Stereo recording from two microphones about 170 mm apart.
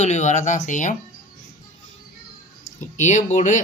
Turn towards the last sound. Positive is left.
turn(degrees=45)  # may be behind; listen again after turning